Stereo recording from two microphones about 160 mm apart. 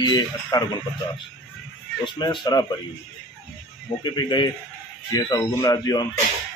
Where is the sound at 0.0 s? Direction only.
25° left (ahead or behind).